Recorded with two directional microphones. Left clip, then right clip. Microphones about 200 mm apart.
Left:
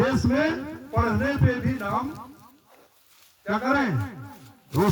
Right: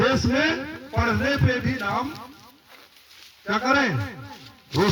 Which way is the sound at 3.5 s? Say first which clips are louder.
Right 3 dB; 60° left (ahead or behind).